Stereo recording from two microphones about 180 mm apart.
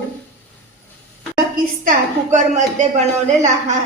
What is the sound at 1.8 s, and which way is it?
Speech, 40° right (ahead or behind).